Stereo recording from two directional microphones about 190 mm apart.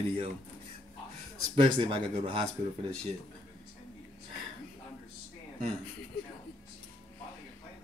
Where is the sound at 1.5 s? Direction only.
30° right (ahead or behind).